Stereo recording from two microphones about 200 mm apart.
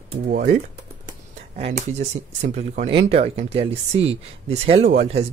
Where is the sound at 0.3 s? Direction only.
40° right (ahead or behind).